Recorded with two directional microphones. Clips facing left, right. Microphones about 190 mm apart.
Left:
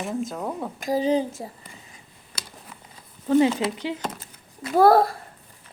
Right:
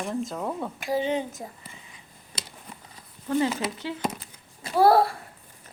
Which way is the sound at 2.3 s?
25° right (ahead or behind).